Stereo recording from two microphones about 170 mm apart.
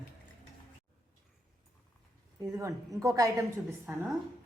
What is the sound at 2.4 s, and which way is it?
A woman's voice, 20° right (ahead or behind).